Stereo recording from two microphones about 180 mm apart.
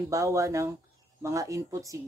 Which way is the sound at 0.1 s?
15° right (ahead or behind).